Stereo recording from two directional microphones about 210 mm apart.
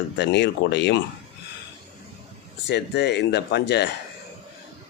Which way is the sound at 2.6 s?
55° left (ahead or behind).